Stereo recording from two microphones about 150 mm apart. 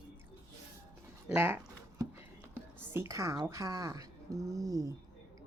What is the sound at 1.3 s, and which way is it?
A woman's voice, 10° right (ahead or behind).